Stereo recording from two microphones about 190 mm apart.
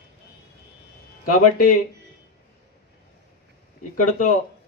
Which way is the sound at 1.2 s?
50° left (ahead or behind).